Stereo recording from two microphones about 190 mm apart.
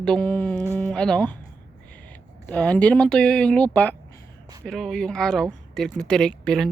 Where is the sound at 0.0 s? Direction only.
5° left (ahead or behind).